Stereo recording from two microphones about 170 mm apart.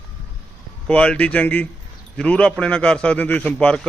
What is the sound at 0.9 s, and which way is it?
A man's voice, 5° left (ahead or behind).